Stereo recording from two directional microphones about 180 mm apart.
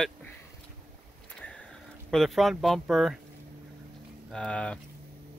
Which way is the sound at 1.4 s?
5° left (ahead or behind).